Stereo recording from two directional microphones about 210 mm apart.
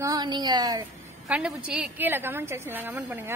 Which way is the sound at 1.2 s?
5° right (ahead or behind).